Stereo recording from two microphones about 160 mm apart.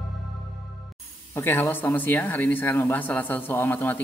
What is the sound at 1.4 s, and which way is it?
A man's voice, 15° left (ahead or behind).